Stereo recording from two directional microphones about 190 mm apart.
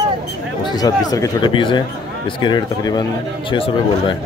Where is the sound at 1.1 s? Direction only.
20° left (ahead or behind).